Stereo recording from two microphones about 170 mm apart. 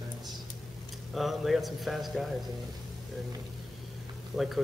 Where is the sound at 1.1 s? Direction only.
Centre (ahead or behind).